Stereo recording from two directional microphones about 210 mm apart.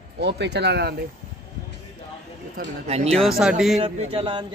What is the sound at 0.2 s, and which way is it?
Speech, 55° right (ahead or behind).